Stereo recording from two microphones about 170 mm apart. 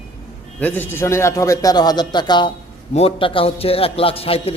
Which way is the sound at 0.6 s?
10° left (ahead or behind).